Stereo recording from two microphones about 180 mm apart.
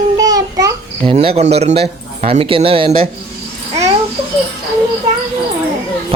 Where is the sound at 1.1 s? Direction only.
35° right (ahead or behind).